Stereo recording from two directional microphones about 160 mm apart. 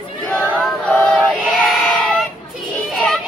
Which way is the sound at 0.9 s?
5° left (ahead or behind).